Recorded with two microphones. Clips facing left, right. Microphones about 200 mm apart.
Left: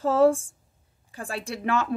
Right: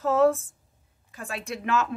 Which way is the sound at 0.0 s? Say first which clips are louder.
Left 1 dB; 30° left (ahead or behind).